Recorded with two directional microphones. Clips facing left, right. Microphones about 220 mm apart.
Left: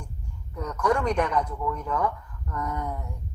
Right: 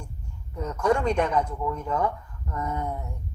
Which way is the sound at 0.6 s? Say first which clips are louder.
Right 1 dB; 25° right (ahead or behind).